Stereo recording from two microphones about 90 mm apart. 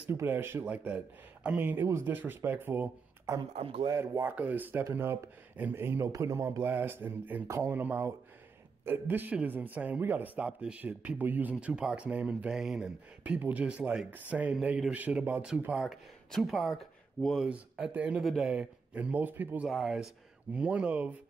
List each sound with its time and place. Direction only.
0.1 s speech: 30° right (ahead or behind)
3.5 s a man's voice: 90° right
3.9 s speech: 30° right (ahead or behind); by 12.9 s 5° right (ahead or behind)
13.2 s speech: 15° right (ahead or behind)
15.7 s speech: centre (ahead or behind)
17.5 s speech: 15° right (ahead or behind)
18.2 s a man's voice: centre (ahead or behind)
18.9 s speech: 20° right (ahead or behind)
19.7 s a man's voice: centre (ahead or behind)
20.5 s speech: 15° right (ahead or behind)